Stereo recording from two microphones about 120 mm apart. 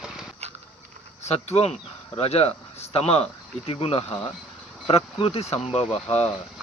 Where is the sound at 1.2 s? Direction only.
60° left (ahead or behind).